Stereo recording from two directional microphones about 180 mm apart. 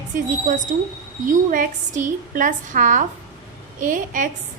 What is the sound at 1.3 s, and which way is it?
A woman's voice, 50° right (ahead or behind).